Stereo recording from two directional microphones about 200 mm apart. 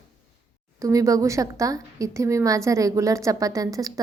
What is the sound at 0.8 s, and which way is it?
A woman's voice, 15° right (ahead or behind).